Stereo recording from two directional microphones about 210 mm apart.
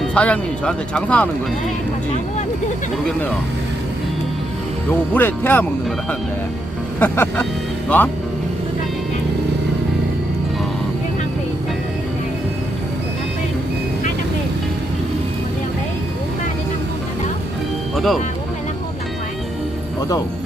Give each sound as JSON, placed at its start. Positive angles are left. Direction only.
{"t": 0.0, "sound": "speech", "side_deg": 5}
{"t": 5.1, "sound": "speech", "side_deg": 10}
{"t": 7.0, "sound": "speech", "side_deg": 10}
{"t": 17.9, "sound": "music", "side_deg": 0}
{"t": 20.0, "sound": "speech", "side_deg": 15}